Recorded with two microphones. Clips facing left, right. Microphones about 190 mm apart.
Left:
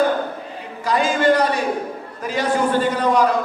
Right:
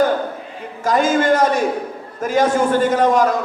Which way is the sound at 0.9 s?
45° right (ahead or behind).